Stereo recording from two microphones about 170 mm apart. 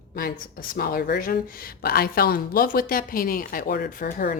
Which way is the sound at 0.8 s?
60° left (ahead or behind).